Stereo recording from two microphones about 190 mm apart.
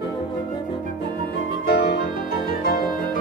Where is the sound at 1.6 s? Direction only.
60° left (ahead or behind).